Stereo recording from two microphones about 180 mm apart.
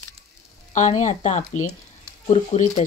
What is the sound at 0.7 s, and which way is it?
Frying, 40° left (ahead or behind).